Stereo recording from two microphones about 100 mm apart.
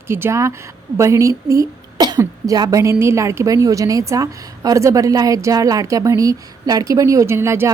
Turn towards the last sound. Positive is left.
turn(degrees=-25)  # may be behind; listen again after turning